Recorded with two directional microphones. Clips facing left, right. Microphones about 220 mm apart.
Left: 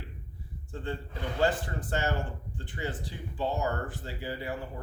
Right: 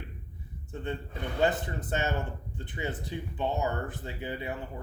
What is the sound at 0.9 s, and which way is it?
Speech, 20° right (ahead or behind).